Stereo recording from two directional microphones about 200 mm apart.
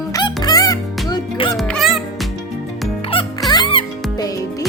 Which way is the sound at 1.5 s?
Centre (ahead or behind).